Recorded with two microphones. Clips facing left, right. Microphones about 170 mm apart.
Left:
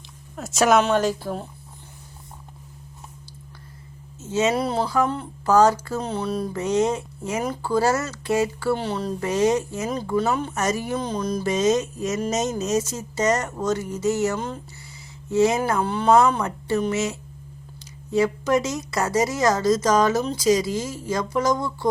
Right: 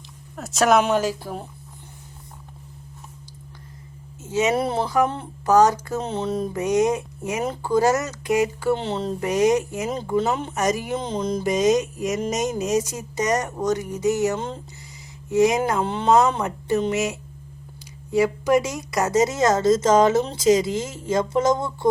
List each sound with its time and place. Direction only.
0.3 s speech: centre (ahead or behind)
4.2 s a woman's voice: 15° right (ahead or behind)